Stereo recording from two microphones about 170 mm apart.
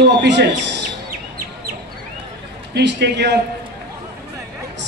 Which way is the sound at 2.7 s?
80° right.